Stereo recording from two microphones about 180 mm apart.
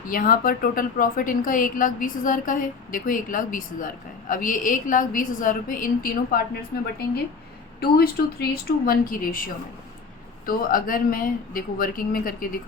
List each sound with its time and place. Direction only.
0.1 s a woman's voice: 50° left (ahead or behind)
10.4 s a woman's voice: 50° left (ahead or behind)